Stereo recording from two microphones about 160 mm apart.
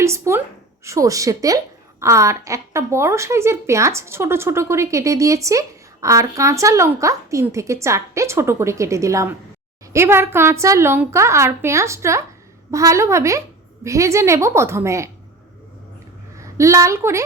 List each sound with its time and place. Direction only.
0.0 s a woman's voice: 15° right (ahead or behind)
16.4 s a woman's voice: 20° right (ahead or behind)